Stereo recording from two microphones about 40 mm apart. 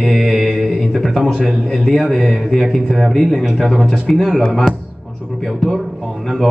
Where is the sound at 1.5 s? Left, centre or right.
Centre.